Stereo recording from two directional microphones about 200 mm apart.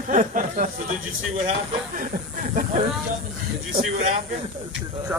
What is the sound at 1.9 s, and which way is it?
Speech, 40° right (ahead or behind).